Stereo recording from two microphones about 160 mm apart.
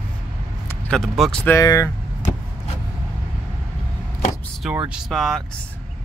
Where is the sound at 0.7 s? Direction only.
5° left (ahead or behind).